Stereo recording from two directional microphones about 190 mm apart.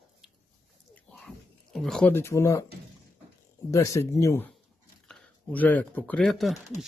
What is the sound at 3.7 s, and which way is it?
Speech, 15° left (ahead or behind).